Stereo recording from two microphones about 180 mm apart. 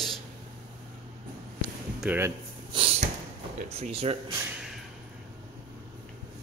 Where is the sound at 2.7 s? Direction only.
30° right (ahead or behind).